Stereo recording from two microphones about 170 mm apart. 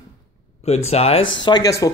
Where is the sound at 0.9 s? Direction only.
35° left (ahead or behind).